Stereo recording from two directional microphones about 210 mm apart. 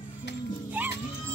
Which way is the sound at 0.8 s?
10° right (ahead or behind).